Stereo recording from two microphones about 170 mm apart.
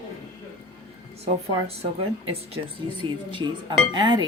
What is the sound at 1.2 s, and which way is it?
Speech, 35° right (ahead or behind).